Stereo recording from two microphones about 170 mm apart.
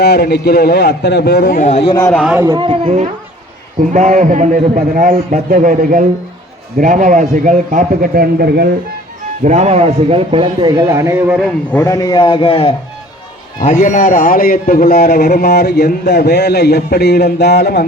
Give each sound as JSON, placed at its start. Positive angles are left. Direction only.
{"t": 0.0, "sound": "a man's voice", "side_deg": 75}
{"t": 1.8, "sound": "a man's voice", "side_deg": 30}
{"t": 2.0, "sound": "a man's voice", "side_deg": 5}
{"t": 2.4, "sound": "speech", "side_deg": -15}
{"t": 2.6, "sound": "speech", "side_deg": -35}
{"t": 3.9, "sound": "a man's voice", "side_deg": -45}
{"t": 9.4, "sound": "speech", "side_deg": -45}
{"t": 11.8, "sound": "a man's voice", "side_deg": 20}
{"t": 13.6, "sound": "a man's voice", "side_deg": 50}